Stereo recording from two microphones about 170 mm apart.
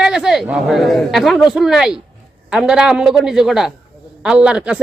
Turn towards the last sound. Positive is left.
turn(degrees=-5)  # may be behind; listen again after turning